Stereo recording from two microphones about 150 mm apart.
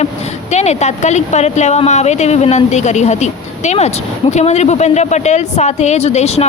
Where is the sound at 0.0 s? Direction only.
50° left (ahead or behind).